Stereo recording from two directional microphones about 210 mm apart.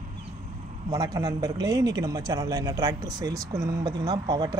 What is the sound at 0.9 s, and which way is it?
A man's voice, 15° right (ahead or behind).